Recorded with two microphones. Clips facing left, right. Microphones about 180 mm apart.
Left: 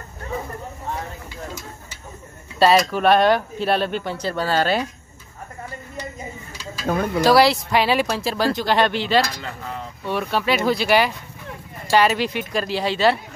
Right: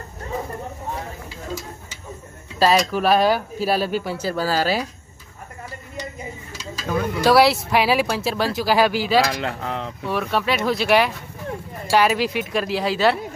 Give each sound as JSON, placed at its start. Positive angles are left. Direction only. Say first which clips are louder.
{"t": 2.6, "sound": "speech", "louder": "left 2 dB", "side_deg": 0}
{"t": 6.9, "sound": "speech", "louder": "left 2 dB", "side_deg": 50}
{"t": 7.2, "sound": "speech", "louder": "even", "side_deg": 0}
{"t": 9.3, "sound": "a sound", "louder": "right 6 dB", "side_deg": -70}
{"t": 10.0, "sound": "speech", "louder": "left 1 dB", "side_deg": 0}